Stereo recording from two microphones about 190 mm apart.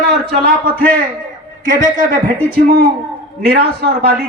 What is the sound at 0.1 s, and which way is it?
Speech, 55° right (ahead or behind).